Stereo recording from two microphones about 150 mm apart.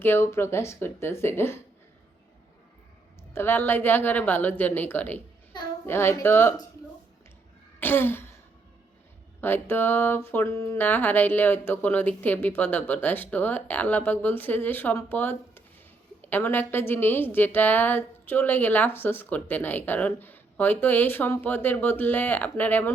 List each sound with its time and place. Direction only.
0.0 s a woman's voice: 15° left (ahead or behind)
3.3 s a woman's voice: 15° left (ahead or behind)
7.8 s throat clearing: 15° left (ahead or behind)
9.4 s a woman's voice: 15° left (ahead or behind)